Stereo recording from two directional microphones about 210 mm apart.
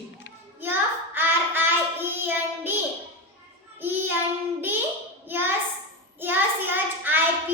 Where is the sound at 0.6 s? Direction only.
10° right (ahead or behind).